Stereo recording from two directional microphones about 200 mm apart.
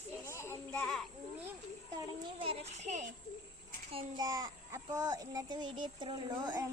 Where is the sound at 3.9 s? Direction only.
20° right (ahead or behind).